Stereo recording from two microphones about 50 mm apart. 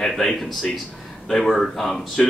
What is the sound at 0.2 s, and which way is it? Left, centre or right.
Speech, centre.